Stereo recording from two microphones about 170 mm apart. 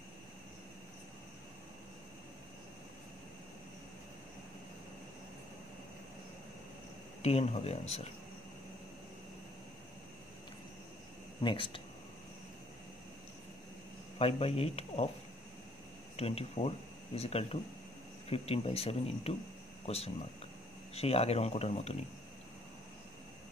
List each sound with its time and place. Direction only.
7.2 s speech: 40° left (ahead or behind)
11.4 s speech: 30° left (ahead or behind)
14.1 s speech: 35° left (ahead or behind)
16.2 s speech: 35° left (ahead or behind)
20.9 s speech: 35° left (ahead or behind)